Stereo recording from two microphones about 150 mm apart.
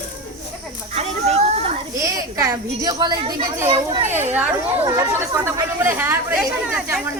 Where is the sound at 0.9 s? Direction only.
45° right (ahead or behind).